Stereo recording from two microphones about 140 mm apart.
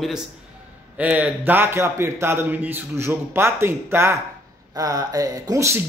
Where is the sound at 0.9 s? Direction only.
10° right (ahead or behind).